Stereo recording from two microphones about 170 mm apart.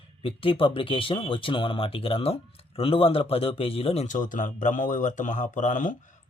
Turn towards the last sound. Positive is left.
turn(degrees=50)  # may be behind; listen again after turning